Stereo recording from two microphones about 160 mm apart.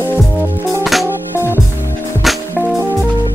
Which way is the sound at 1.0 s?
15° left (ahead or behind).